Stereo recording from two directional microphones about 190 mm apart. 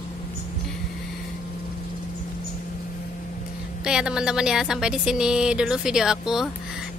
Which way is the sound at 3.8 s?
5° right (ahead or behind).